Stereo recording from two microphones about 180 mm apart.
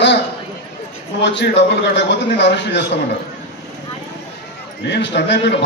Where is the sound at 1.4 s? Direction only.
80° left.